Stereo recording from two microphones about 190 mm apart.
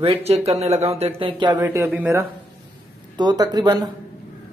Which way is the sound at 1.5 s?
10° right (ahead or behind).